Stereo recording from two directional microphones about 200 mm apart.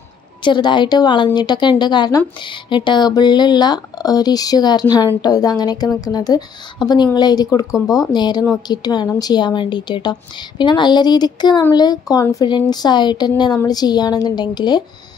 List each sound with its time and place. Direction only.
0.4 s a woman's voice: 25° left (ahead or behind)